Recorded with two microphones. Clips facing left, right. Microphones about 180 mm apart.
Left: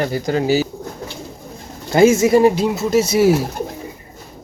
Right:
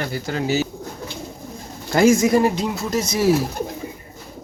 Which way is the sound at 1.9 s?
25° left (ahead or behind).